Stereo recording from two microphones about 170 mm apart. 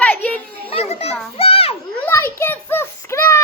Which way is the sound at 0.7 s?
35° left (ahead or behind).